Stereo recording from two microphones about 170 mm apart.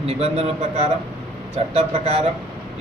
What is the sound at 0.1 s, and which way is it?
Speech, 40° right (ahead or behind).